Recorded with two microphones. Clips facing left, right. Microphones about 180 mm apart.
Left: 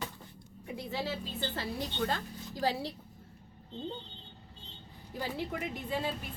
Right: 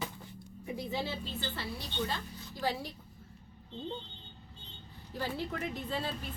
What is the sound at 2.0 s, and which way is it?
Speech, 45° left (ahead or behind).